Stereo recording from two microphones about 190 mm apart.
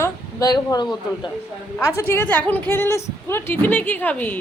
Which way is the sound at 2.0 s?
10° left (ahead or behind).